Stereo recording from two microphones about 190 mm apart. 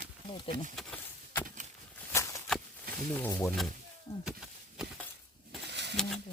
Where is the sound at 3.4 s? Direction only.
Centre (ahead or behind).